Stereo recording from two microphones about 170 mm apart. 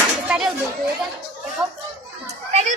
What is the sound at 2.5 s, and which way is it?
Children playing, 40° right (ahead or behind).